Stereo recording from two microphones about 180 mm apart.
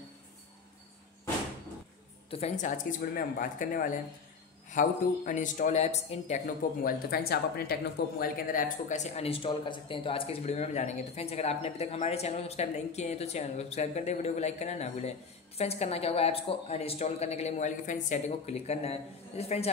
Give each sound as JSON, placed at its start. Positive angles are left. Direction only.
{"t": 2.3, "sound": "a man's voice", "side_deg": 40}